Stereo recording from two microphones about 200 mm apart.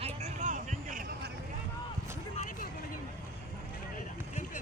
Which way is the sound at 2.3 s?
35° left (ahead or behind).